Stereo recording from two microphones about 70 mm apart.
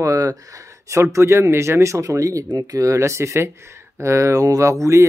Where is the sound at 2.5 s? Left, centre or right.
Right.